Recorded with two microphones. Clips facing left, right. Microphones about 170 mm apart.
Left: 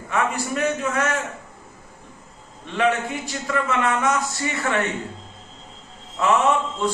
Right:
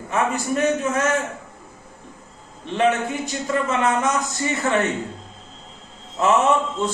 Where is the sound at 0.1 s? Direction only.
20° right (ahead or behind).